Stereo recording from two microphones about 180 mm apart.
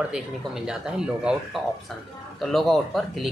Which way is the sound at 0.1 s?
5° right (ahead or behind).